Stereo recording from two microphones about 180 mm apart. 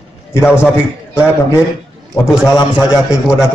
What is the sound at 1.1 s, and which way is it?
Speech, 15° left (ahead or behind).